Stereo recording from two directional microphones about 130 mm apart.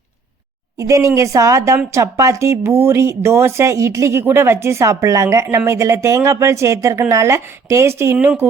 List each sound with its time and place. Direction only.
0.8 s speech: 25° right (ahead or behind)